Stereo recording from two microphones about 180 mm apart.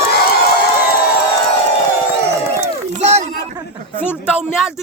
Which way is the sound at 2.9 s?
40° right (ahead or behind).